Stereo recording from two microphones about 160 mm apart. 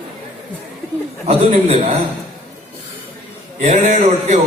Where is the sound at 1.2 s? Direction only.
40° right (ahead or behind).